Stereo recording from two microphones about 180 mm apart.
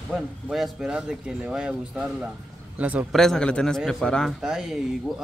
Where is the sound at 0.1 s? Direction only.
Centre (ahead or behind).